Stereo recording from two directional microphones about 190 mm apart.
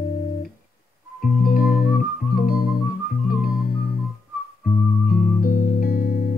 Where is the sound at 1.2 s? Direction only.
50° left (ahead or behind).